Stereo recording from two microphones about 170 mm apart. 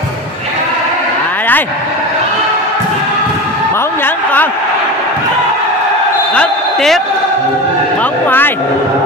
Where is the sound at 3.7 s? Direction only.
15° left (ahead or behind).